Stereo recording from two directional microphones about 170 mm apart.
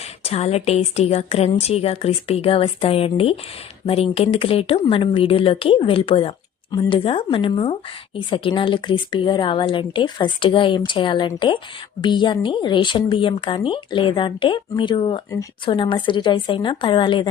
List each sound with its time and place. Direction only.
0.2 s speech: 40° left (ahead or behind)